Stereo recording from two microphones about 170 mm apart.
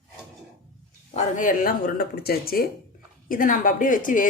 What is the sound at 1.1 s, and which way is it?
Speech, 45° left (ahead or behind).